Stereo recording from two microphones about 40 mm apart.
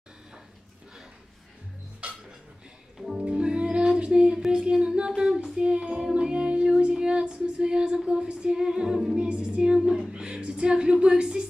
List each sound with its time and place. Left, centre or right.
3.2 s music: right
4.5 s speech: right
5.4 s child singing: right
9.2 s speech: right
9.8 s music: centre
10.1 s speech: right